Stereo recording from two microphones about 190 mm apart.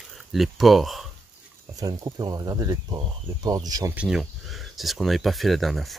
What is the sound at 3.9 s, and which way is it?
Speech, 5° right (ahead or behind).